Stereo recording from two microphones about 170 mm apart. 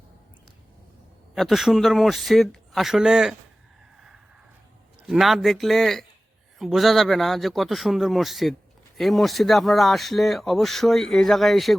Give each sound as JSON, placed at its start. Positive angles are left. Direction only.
{"t": 1.4, "sound": "speech", "side_deg": 0}
{"t": 5.0, "sound": "speech", "side_deg": 0}